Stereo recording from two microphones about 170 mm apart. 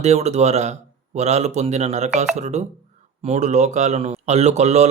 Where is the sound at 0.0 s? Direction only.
40° right (ahead or behind).